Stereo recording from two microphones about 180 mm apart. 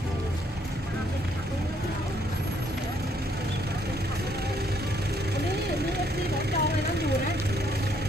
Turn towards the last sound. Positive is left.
turn(degrees=-65)  # may be behind; listen again after turning